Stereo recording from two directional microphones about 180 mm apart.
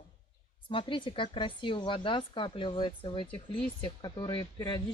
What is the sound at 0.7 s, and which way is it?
Speech, 30° left (ahead or behind).